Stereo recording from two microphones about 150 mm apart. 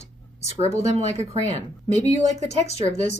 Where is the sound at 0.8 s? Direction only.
45° right (ahead or behind).